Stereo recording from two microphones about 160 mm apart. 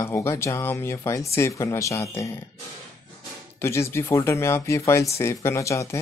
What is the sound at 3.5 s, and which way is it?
Speech, 15° left (ahead or behind).